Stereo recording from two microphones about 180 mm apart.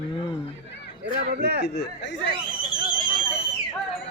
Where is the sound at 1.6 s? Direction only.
70° left (ahead or behind).